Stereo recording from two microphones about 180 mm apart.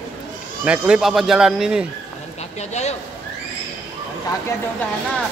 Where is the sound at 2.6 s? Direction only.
40° left (ahead or behind).